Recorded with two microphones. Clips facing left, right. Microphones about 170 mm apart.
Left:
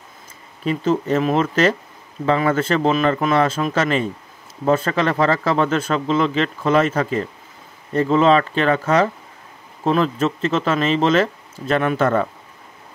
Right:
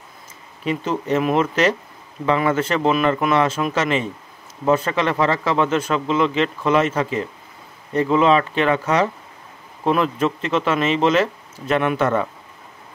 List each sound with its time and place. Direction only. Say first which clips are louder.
0.7 s a man's voice: left 3 dB; 40° left (ahead or behind)